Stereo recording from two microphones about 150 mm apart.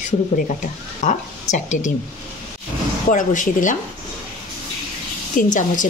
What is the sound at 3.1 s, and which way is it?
Speech, 60° left (ahead or behind).